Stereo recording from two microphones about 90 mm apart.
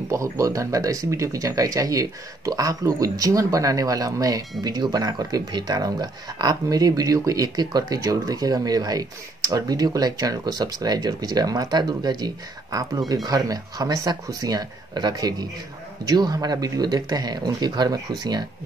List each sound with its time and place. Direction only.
0.1 s speech: 35° right (ahead or behind)